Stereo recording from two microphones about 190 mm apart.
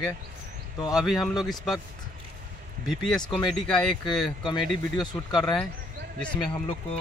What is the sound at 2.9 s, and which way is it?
Speech, centre (ahead or behind).